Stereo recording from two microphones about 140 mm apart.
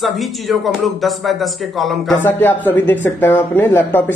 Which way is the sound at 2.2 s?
15° left (ahead or behind).